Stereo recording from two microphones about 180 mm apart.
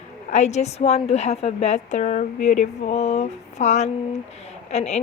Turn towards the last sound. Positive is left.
turn(degrees=40)  # may be behind; listen again after turning